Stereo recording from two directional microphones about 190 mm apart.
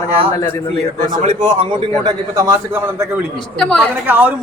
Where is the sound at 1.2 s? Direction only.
30° right (ahead or behind).